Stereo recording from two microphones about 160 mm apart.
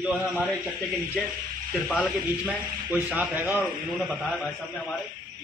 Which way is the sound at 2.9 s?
10° right (ahead or behind).